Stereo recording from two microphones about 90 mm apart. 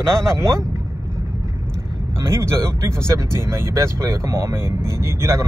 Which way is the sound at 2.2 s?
30° right (ahead or behind).